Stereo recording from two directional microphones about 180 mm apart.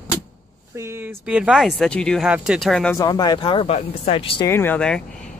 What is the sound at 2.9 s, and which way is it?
Speech, 20° left (ahead or behind).